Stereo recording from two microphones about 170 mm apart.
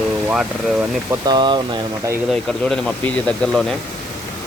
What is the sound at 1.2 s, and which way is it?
Speech, 25° right (ahead or behind).